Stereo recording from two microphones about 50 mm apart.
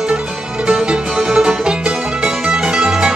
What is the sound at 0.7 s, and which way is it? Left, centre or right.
Music, centre.